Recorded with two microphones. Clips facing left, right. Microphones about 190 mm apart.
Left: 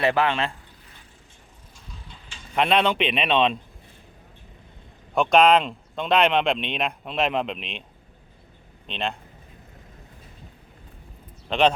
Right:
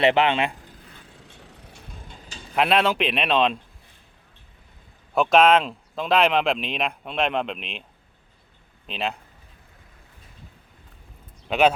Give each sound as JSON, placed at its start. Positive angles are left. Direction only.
{"t": 0.0, "sound": "speech", "side_deg": -20}
{"t": 1.3, "sound": "a sound", "side_deg": -70}
{"t": 2.6, "sound": "speech", "side_deg": 0}
{"t": 5.1, "sound": "speech", "side_deg": 0}
{"t": 8.9, "sound": "speech", "side_deg": -5}
{"t": 11.4, "sound": "speech", "side_deg": -5}